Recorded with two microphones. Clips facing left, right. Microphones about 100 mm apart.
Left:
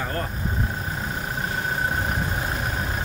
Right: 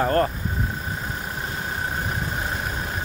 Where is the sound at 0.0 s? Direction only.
50° right (ahead or behind).